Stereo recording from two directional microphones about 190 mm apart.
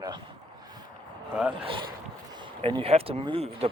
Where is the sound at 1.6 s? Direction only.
25° right (ahead or behind).